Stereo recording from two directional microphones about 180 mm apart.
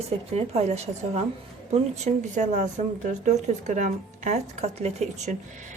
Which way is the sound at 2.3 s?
40° right (ahead or behind).